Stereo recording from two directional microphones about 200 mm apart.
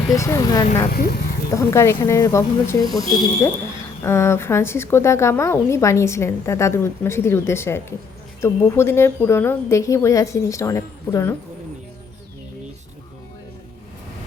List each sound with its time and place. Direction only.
0.1 s a woman's voice: 15° left (ahead or behind)
0.9 s speech: 50° left (ahead or behind)
1.5 s a woman's voice: 15° left (ahead or behind)